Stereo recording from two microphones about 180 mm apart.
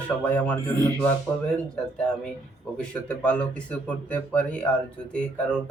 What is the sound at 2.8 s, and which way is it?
Speech, 5° left (ahead or behind).